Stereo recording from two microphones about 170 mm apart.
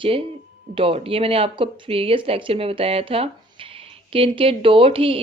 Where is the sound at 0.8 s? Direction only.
30° right (ahead or behind).